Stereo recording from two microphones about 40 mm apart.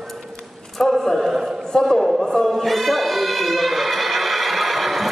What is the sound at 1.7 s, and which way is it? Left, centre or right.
Speech, centre.